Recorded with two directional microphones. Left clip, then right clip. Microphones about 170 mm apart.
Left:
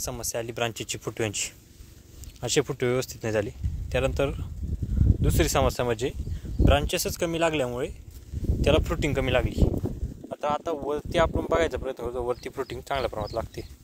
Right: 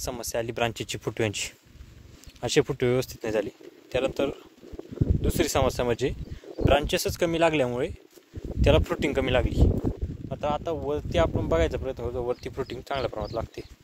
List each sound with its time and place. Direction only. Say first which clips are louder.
0.0 s speech: right 1 dB; 45° right (ahead or behind)
10.3 s speech: left 1 dB; 15° right (ahead or behind)